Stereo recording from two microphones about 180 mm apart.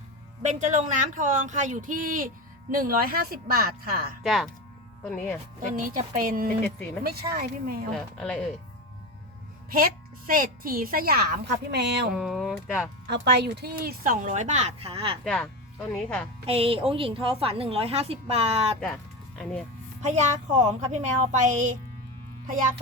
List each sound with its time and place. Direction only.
0.7 s speech: 45° right (ahead or behind)
4.2 s speech: centre (ahead or behind)
5.5 s speech: 50° right (ahead or behind)
7.9 s speech: 5° left (ahead or behind)
9.7 s speech: 50° right (ahead or behind); by 12.1 s 70° right (ahead or behind)
12.1 s speech: centre (ahead or behind)
13.1 s speech: 70° right (ahead or behind); by 15.2 s 30° right (ahead or behind)
15.2 s speech: 5° left (ahead or behind)
16.5 s a woman's voice: 30° right (ahead or behind)
19.4 s speech: 5° left (ahead or behind)
20.1 s a woman's voice: 40° right (ahead or behind)